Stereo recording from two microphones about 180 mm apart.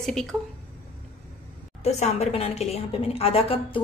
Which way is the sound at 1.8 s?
35° left (ahead or behind).